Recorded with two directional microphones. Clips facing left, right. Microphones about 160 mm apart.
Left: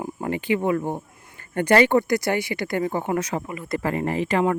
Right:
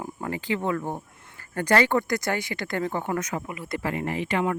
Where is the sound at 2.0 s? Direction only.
45° right (ahead or behind).